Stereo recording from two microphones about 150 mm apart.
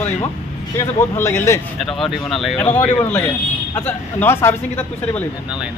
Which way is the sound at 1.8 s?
Centre (ahead or behind).